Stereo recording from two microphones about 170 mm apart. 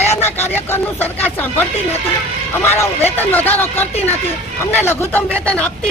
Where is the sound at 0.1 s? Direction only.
15° left (ahead or behind).